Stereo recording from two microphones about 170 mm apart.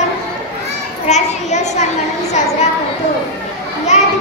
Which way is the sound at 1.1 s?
45° left (ahead or behind).